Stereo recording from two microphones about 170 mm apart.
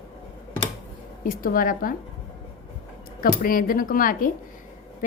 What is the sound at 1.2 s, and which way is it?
Speech, 55° left (ahead or behind).